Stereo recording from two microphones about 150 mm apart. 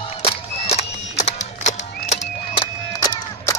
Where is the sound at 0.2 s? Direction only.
45° left (ahead or behind).